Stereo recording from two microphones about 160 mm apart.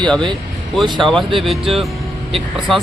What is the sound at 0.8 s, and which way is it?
Speech, 30° right (ahead or behind).